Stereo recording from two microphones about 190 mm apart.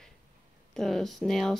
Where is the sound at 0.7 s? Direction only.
Centre (ahead or behind).